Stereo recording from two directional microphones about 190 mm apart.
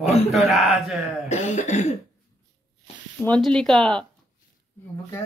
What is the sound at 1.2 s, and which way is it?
Cough, 40° left (ahead or behind).